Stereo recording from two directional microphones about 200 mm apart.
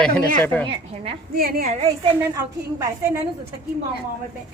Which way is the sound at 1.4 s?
50° right (ahead or behind).